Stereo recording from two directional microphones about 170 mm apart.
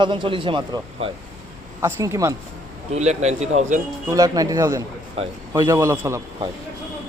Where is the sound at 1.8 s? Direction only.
15° right (ahead or behind).